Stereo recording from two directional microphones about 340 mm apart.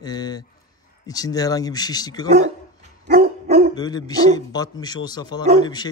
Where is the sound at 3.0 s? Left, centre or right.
Right.